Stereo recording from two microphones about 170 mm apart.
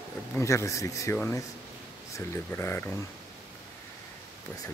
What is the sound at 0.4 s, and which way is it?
Speech, 15° left (ahead or behind).